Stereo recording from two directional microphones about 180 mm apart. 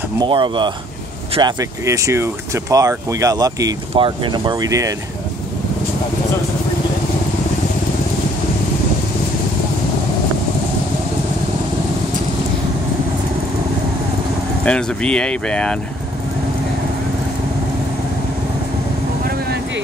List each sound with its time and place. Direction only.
0.2 s speech: 25° right (ahead or behind)
14.6 s speech: 5° left (ahead or behind)